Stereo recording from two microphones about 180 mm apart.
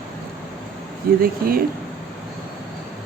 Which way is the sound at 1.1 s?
55° right (ahead or behind).